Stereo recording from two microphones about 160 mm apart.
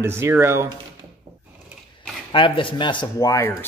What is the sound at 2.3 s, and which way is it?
Speech, 30° left (ahead or behind).